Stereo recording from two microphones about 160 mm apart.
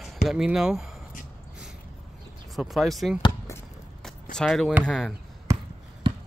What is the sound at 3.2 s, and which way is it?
Basketball bounce, 20° left (ahead or behind).